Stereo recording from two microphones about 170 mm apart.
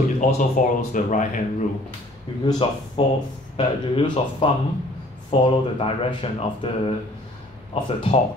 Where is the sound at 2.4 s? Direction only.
25° left (ahead or behind).